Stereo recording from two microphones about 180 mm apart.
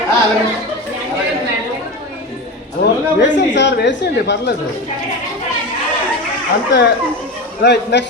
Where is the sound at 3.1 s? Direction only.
75° left (ahead or behind).